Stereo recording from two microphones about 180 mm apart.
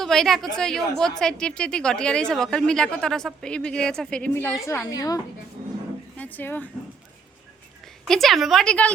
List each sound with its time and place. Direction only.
0.0 s a woman's voice: centre (ahead or behind); by 5.2 s 20° left (ahead or behind)
6.1 s speech: 10° left (ahead or behind)
8.0 s a woman's voice: centre (ahead or behind)